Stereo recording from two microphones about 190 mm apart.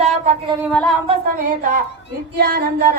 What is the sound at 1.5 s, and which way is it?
Speech, 45° right (ahead or behind).